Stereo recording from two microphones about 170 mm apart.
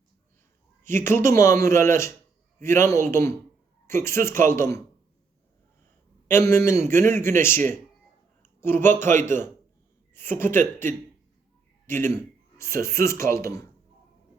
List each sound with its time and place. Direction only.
0.9 s a man's voice: 15° left (ahead or behind)
6.2 s a man's voice: 15° left (ahead or behind)
11.9 s a man's voice: 15° left (ahead or behind)